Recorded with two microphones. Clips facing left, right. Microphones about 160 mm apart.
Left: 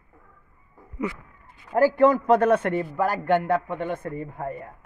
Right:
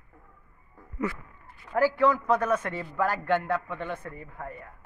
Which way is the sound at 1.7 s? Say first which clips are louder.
Left 5 dB; 45° left (ahead or behind).